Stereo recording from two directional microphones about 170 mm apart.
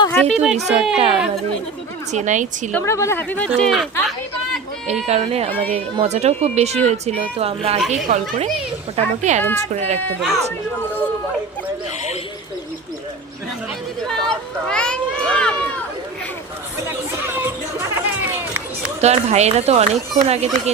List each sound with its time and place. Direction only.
0.1 s a sound: 10° left (ahead or behind)
0.3 s speech: centre (ahead or behind)
2.1 s a child's voice: 45° right (ahead or behind)
2.7 s speech: 15° left (ahead or behind); by 3.8 s centre (ahead or behind)
5.0 s speech: 40° right (ahead or behind)
7.8 s speech: centre (ahead or behind)
8.0 s a child's voice: 50° right (ahead or behind)
9.4 s speech: 10° left (ahead or behind)
10.2 s speech: centre (ahead or behind)
14.3 s a sound: 5° left (ahead or behind)
16.8 s chatter: 15° right (ahead or behind)
19.0 s speech: 40° right (ahead or behind)